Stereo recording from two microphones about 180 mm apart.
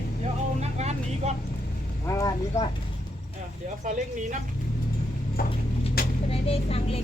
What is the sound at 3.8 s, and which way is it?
Speech, 45° right (ahead or behind).